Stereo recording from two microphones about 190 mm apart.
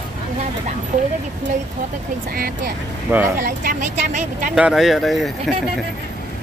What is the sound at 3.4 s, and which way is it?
Speech, 45° right (ahead or behind).